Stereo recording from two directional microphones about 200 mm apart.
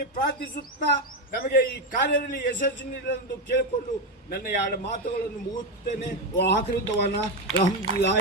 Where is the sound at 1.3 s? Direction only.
50° left (ahead or behind).